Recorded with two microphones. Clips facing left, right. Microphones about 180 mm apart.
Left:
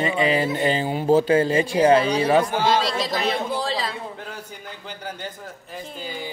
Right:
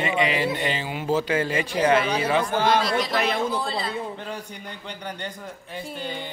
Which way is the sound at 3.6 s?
90° left.